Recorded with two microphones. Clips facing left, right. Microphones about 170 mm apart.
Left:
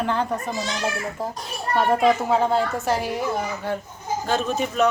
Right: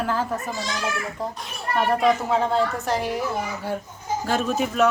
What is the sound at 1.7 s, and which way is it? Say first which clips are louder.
A woman's voice: left 1 dB; centre (ahead or behind).